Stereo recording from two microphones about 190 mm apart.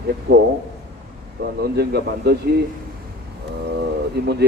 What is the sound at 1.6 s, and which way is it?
Speech, 60° right (ahead or behind).